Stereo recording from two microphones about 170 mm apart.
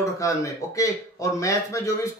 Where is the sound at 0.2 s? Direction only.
20° left (ahead or behind).